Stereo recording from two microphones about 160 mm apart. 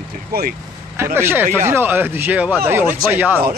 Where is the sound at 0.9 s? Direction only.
15° right (ahead or behind).